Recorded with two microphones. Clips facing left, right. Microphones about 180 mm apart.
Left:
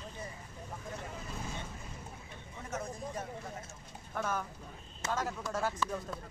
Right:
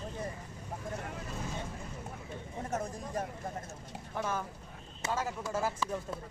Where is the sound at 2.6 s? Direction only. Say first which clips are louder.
Right 3 dB; 50° right (ahead or behind).